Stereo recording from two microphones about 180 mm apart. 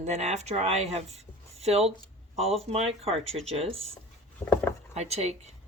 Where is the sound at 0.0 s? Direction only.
40° right (ahead or behind).